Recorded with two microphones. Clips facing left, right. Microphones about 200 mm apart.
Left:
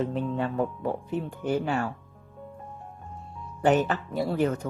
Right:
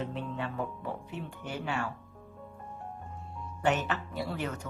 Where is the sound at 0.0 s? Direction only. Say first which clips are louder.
Left 8 dB; 45° left (ahead or behind).